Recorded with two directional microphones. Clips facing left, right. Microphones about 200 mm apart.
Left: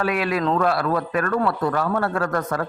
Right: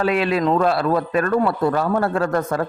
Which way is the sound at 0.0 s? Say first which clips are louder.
Right 3 dB; 25° right (ahead or behind).